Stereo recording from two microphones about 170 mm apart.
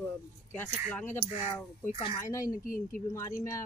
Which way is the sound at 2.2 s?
20° left (ahead or behind).